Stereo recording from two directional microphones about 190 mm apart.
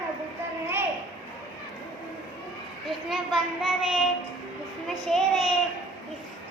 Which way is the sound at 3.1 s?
Centre (ahead or behind).